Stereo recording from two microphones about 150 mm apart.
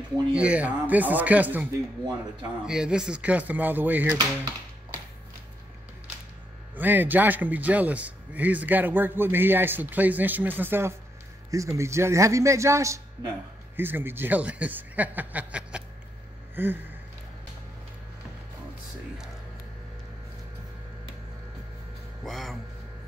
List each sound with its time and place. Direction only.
0.3 s a man's voice: 10° right (ahead or behind)
6.7 s a man's voice: 10° right (ahead or behind)
16.5 s a sound: 15° right (ahead or behind)
22.2 s speech: centre (ahead or behind)